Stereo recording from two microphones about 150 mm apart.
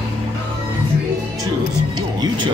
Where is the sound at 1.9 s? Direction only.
30° right (ahead or behind).